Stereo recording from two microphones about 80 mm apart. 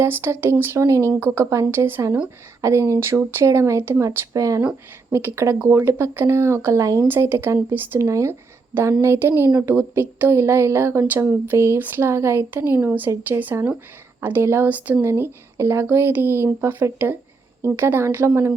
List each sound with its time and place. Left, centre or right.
0.0 s speech: right
4.4 s a woman's voice: right